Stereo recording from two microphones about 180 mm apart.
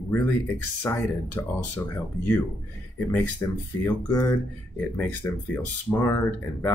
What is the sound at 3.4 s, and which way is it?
Speech, 15° left (ahead or behind).